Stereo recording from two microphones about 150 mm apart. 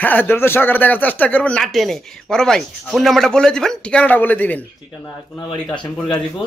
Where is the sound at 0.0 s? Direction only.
10° left (ahead or behind).